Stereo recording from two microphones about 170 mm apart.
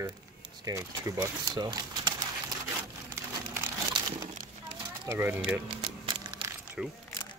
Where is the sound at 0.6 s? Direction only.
20° right (ahead or behind).